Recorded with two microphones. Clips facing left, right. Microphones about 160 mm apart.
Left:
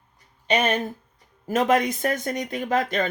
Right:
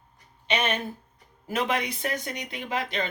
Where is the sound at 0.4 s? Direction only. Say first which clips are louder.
Left 5 dB; 40° left (ahead or behind).